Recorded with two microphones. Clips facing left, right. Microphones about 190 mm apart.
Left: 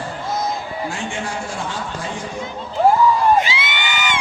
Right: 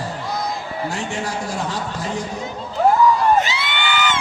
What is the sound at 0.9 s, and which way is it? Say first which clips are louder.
Speech: right 1 dB; 40° right (ahead or behind).